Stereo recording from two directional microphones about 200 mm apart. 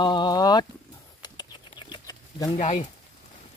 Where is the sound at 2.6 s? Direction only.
35° left (ahead or behind).